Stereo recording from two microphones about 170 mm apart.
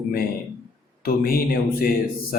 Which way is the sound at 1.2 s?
60° left (ahead or behind).